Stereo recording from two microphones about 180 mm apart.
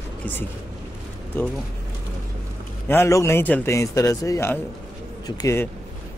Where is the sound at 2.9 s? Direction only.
15° left (ahead or behind).